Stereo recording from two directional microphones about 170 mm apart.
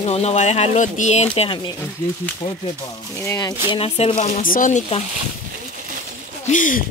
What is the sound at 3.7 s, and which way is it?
Speech, 35° left (ahead or behind).